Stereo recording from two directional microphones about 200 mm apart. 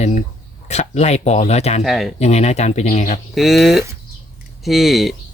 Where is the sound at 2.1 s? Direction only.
35° left (ahead or behind).